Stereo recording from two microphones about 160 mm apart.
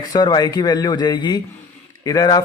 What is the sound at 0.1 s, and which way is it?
Speech, 25° left (ahead or behind).